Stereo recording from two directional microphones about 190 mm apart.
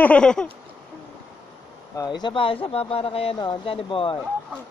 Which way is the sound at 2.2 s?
25° left (ahead or behind).